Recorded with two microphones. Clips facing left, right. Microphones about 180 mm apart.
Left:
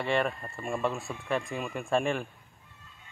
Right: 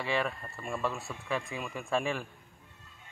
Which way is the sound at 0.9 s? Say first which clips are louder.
Left 3 dB; centre (ahead or behind).